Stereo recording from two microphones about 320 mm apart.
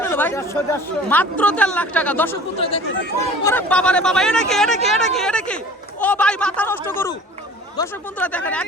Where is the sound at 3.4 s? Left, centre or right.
Centre.